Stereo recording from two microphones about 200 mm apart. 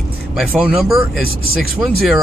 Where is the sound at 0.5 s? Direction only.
5° right (ahead or behind).